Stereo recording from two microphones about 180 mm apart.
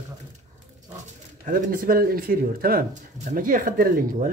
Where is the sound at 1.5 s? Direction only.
50° right (ahead or behind).